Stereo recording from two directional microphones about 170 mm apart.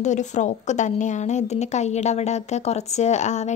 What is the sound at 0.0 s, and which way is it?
A woman's voice, 45° left (ahead or behind).